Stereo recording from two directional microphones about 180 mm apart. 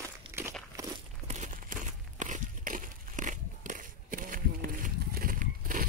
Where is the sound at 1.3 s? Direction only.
40° right (ahead or behind).